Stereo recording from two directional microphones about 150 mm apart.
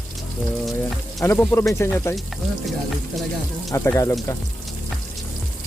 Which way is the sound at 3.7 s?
20° left (ahead or behind).